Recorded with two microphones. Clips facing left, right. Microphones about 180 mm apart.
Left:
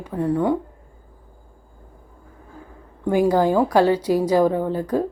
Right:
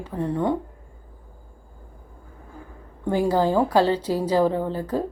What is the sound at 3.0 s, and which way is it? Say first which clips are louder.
A woman's voice: left 3 dB; 15° left (ahead or behind).